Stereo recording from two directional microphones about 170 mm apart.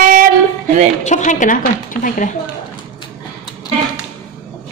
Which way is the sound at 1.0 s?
45° left (ahead or behind).